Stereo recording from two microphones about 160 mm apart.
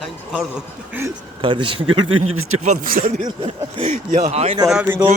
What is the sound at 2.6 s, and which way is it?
Speech, 60° right (ahead or behind).